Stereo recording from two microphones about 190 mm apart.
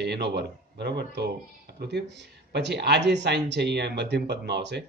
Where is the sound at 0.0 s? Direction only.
60° right (ahead or behind).